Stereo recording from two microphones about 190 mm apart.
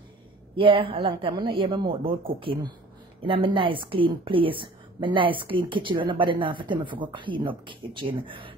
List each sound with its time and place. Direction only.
0.6 s a woman's voice: 30° right (ahead or behind)